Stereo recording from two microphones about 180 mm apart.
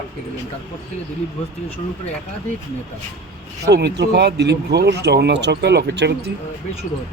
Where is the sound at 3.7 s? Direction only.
70° right (ahead or behind).